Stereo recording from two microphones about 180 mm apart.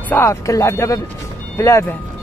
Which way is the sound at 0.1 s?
15° left (ahead or behind).